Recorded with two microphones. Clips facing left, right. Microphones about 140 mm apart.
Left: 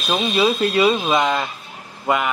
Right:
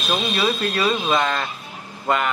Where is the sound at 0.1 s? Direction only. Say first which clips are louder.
Left 4 dB; 20° left (ahead or behind).